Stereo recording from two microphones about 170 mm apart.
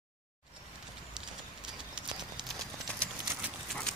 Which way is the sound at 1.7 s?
5° right (ahead or behind).